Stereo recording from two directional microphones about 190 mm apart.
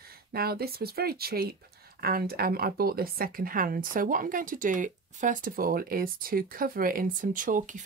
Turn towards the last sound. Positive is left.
turn(degrees=-45)  # may be behind; listen again after turning